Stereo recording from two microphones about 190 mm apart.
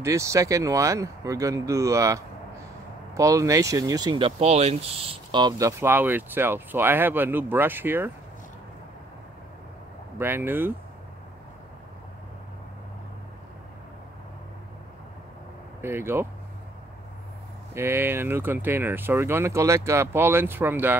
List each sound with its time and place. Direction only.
0.0 s speech: 15° right (ahead or behind)
10.1 s speech: 10° right (ahead or behind)
15.8 s speech: 15° right (ahead or behind)
17.7 s speech: 10° right (ahead or behind)